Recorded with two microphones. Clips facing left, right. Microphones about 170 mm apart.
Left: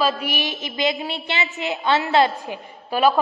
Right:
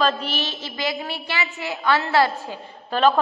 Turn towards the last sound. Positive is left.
turn(degrees=10)  # may be behind; listen again after turning